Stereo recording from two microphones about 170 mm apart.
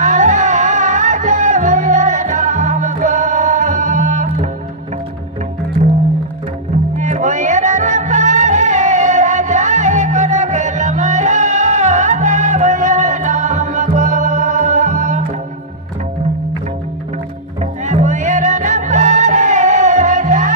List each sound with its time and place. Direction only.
0.0 s music: 45° right (ahead or behind)
7.0 s music: 45° right (ahead or behind)
17.6 s music: 45° right (ahead or behind)